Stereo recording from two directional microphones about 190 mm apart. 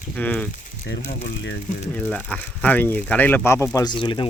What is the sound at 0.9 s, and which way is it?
Speech, 60° left (ahead or behind).